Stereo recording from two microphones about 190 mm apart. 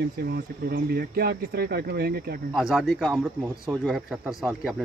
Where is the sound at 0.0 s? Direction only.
60° right (ahead or behind).